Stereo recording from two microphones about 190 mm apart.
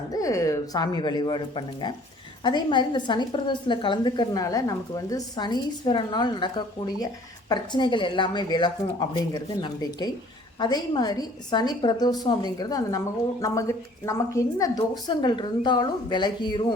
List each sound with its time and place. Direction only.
0.1 s a woman's voice: 20° left (ahead or behind)